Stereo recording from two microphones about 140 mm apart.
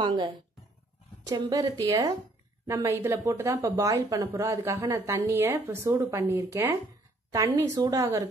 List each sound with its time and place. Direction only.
0.0 s speech: 35° right (ahead or behind)